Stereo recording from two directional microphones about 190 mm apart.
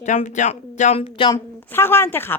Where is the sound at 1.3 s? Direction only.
10° left (ahead or behind).